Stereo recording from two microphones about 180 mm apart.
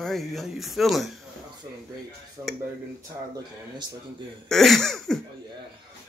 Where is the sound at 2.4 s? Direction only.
20° right (ahead or behind).